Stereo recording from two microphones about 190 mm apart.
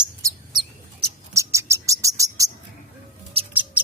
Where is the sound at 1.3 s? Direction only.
15° right (ahead or behind).